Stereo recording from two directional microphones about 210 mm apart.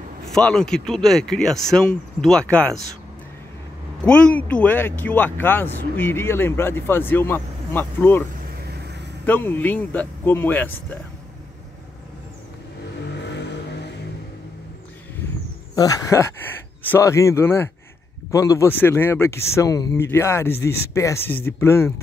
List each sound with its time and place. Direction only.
0.3 s speech: 5° left (ahead or behind)
4.0 s speech: 5° left (ahead or behind)
9.2 s speech: 10° left (ahead or behind)
13.2 s vehicle: 55° left (ahead or behind)
15.7 s speech: 15° left (ahead or behind)